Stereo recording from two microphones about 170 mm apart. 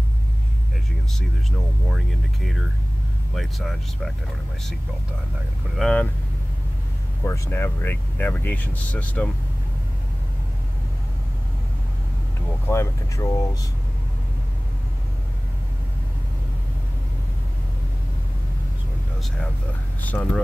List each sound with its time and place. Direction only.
3.3 s speech: centre (ahead or behind)
5.8 s speech: 5° left (ahead or behind)
7.2 s speech: 15° left (ahead or behind)
12.6 s speech: 15° left (ahead or behind)
20.0 s speech: 10° left (ahead or behind)